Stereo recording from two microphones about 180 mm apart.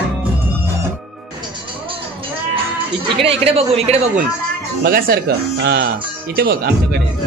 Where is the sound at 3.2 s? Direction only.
35° right (ahead or behind).